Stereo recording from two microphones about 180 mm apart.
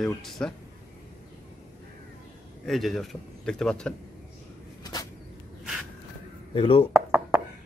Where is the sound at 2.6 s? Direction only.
Centre (ahead or behind).